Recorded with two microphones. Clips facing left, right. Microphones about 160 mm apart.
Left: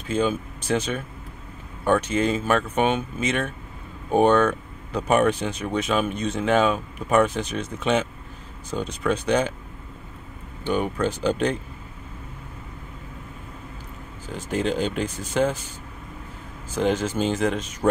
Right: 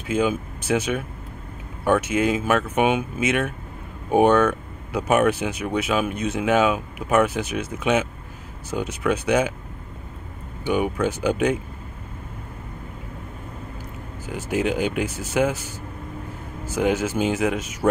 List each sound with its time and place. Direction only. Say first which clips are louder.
0.1 s speech: right 1 dB; 10° right (ahead or behind)
10.6 s speech: right 2 dB; 10° right (ahead or behind)
14.2 s speech: right 2 dB; 10° right (ahead or behind)
15.0 s speech: right 2 dB; 15° left (ahead or behind)
16.7 s speech: right 1 dB; 10° right (ahead or behind)